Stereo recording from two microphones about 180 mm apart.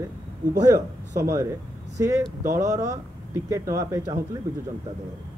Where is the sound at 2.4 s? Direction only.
20° right (ahead or behind).